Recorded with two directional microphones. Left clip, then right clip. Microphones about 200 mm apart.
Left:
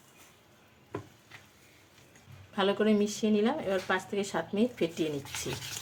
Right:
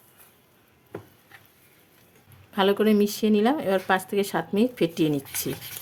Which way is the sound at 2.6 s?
50° right (ahead or behind).